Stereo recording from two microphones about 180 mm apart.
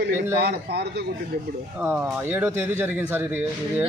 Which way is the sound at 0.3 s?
65° right (ahead or behind).